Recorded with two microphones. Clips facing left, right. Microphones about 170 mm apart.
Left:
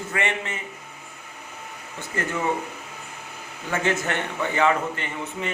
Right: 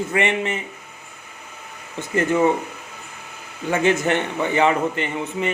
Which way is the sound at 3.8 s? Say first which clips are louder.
Right 6 dB; 20° right (ahead or behind).